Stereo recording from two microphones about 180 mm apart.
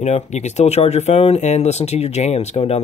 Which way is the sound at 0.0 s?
40° left (ahead or behind).